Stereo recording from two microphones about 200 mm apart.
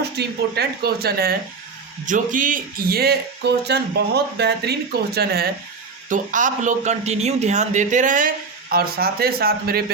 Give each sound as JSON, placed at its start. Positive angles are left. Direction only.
{"t": 0.0, "sound": "speech", "side_deg": -55}
{"t": 6.1, "sound": "a man's voice", "side_deg": -40}